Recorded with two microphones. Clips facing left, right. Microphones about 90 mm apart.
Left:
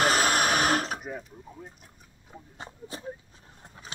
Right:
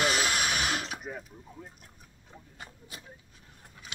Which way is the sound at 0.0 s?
45° left (ahead or behind).